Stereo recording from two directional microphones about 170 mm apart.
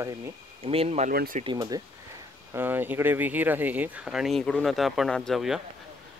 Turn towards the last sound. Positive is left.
turn(degrees=0)  # may be behind; listen again after turning